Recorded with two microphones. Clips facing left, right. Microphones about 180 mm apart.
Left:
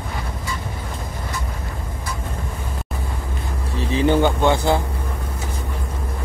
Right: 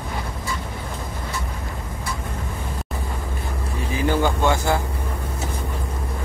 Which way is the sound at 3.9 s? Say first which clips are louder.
Left 4 dB; 20° left (ahead or behind).